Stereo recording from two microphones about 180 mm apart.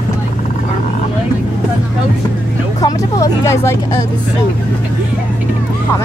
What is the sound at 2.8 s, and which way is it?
Speech, 15° left (ahead or behind).